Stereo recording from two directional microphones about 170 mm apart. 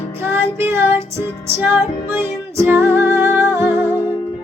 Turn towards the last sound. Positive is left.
turn(degrees=-15)  # may be behind; listen again after turning